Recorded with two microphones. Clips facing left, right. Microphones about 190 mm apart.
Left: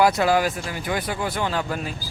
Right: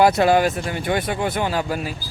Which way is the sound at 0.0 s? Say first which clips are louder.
Right 3 dB; 25° right (ahead or behind).